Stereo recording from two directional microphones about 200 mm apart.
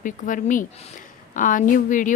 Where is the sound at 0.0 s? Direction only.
40° left (ahead or behind).